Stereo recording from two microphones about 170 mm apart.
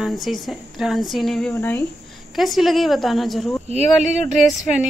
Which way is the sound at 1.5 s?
20° left (ahead or behind).